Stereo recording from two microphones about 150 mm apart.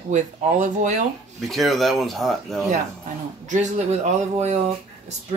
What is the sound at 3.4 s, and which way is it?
Speech, 55° right (ahead or behind).